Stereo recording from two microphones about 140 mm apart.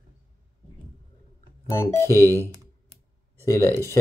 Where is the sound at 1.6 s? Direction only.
20° left (ahead or behind).